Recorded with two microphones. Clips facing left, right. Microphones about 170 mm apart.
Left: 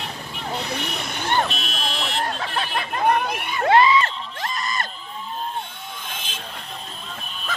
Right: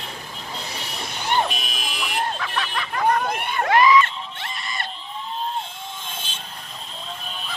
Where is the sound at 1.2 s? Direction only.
10° right (ahead or behind).